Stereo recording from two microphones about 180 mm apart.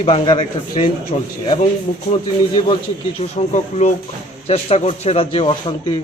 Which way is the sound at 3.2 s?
40° left (ahead or behind).